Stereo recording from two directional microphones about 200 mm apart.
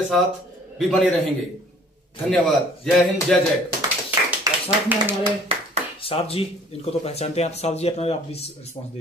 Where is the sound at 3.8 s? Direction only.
15° right (ahead or behind).